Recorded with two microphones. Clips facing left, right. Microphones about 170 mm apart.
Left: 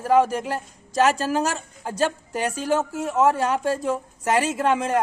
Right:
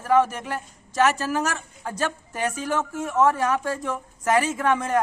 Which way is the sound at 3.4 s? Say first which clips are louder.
Left 2 dB; 30° left (ahead or behind).